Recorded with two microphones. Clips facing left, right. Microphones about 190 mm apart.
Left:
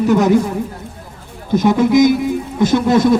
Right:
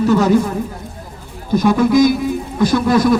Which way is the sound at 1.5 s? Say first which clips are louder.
Left 1 dB; 20° left (ahead or behind).